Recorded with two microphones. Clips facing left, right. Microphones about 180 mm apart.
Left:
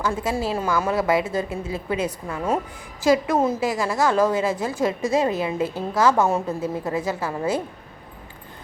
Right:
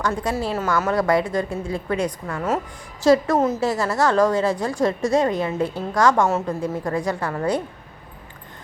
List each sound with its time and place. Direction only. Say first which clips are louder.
0.0 s a woman's voice: even; 5° left (ahead or behind)
3.9 s a woman's voice: right 2 dB; 5° left (ahead or behind)